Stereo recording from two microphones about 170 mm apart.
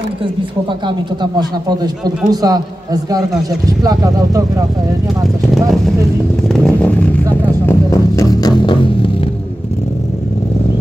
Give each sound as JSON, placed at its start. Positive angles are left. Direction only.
{"t": 0.7, "sound": "a man's voice", "side_deg": -25}
{"t": 5.2, "sound": "speech", "side_deg": 0}
{"t": 6.5, "sound": "vehicle", "side_deg": 5}
{"t": 7.6, "sound": "vehicle", "side_deg": 20}